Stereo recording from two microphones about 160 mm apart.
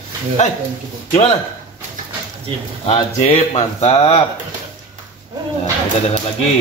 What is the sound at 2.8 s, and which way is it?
Speech, 40° left (ahead or behind).